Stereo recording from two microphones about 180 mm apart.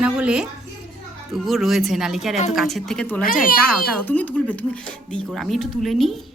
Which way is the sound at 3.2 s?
50° left (ahead or behind).